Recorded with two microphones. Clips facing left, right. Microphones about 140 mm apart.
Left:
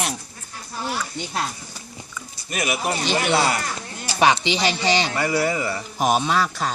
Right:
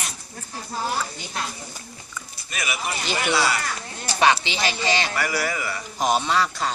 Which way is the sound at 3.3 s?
50° left (ahead or behind).